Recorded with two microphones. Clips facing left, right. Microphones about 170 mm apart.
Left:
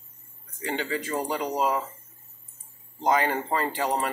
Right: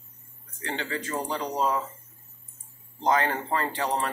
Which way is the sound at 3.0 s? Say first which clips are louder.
Left 1 dB; 10° left (ahead or behind).